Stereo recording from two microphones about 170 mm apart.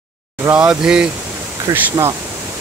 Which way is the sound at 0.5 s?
10° right (ahead or behind).